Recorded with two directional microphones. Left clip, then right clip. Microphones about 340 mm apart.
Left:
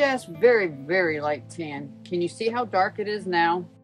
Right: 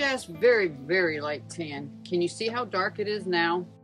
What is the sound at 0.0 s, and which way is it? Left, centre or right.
Speech, centre.